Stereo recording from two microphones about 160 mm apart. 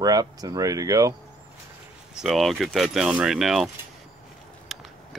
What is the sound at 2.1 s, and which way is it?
Speech, centre (ahead or behind).